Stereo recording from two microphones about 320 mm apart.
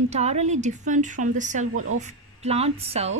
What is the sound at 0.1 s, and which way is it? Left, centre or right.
Speech, right.